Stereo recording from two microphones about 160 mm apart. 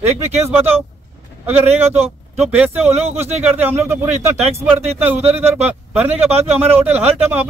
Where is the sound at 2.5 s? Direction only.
10° right (ahead or behind).